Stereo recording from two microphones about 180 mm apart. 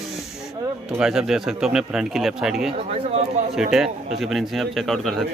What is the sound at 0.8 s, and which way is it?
Speech, 5° right (ahead or behind).